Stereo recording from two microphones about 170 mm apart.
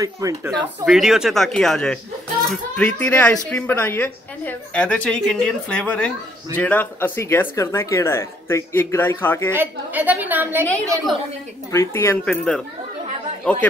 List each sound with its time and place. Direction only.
0.0 s speech: 20° right (ahead or behind)
0.8 s a woman's voice: centre (ahead or behind); by 9.5 s 15° left (ahead or behind)
9.5 s a woman's voice: 10° right (ahead or behind)
11.7 s a woman's voice: 15° left (ahead or behind)
12.3 s speech: 5° left (ahead or behind)